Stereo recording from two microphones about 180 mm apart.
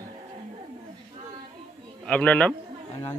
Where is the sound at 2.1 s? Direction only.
5° left (ahead or behind).